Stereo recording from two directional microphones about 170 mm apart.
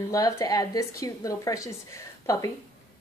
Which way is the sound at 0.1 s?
20° left (ahead or behind).